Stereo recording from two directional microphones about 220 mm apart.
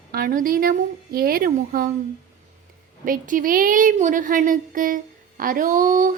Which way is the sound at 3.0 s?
40° right (ahead or behind).